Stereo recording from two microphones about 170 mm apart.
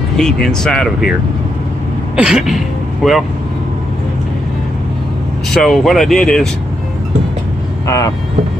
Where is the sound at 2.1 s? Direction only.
5° right (ahead or behind).